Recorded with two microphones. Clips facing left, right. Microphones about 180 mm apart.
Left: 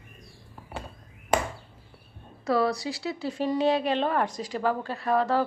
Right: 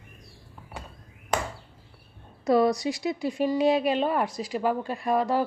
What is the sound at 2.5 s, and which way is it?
A woman's voice, 20° right (ahead or behind).